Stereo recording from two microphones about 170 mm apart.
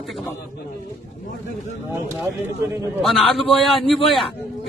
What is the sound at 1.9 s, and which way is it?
Speech, 15° right (ahead or behind).